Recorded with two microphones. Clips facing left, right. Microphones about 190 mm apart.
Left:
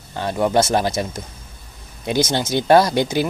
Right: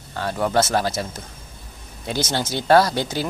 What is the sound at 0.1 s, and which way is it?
Speech, 20° left (ahead or behind).